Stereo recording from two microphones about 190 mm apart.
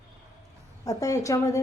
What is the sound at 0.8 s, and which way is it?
Speech, 15° left (ahead or behind).